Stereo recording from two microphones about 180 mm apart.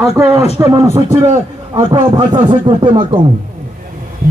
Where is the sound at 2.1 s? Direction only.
25° right (ahead or behind).